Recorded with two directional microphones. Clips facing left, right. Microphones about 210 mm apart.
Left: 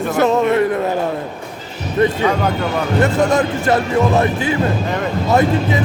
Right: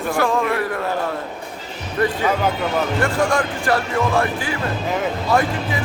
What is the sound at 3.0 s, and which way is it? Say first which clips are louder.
A man's voice: left 7 dB; 20° left (ahead or behind).